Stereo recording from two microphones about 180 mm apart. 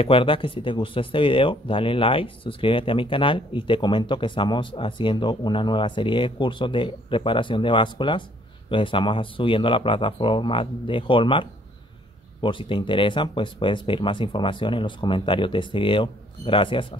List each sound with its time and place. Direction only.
0.0 s speech: 30° left (ahead or behind)